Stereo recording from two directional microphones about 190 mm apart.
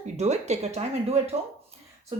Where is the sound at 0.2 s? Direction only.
35° right (ahead or behind).